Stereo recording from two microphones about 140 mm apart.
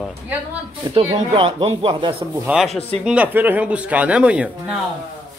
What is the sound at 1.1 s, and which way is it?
Speech, 45° right (ahead or behind).